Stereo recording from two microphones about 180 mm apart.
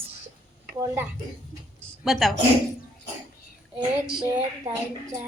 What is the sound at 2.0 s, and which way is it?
Speech, centre (ahead or behind).